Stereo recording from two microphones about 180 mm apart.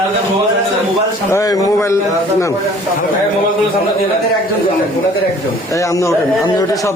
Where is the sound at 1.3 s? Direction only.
20° left (ahead or behind).